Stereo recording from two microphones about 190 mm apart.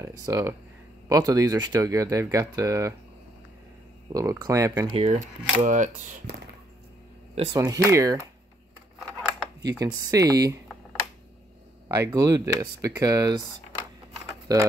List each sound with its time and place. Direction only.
0.0 s speech: 15° right (ahead or behind)
4.1 s speech: 15° right (ahead or behind)
4.9 s speech: 35° right (ahead or behind)
7.5 s speech: 15° right (ahead or behind)
9.7 s speech: 20° right (ahead or behind)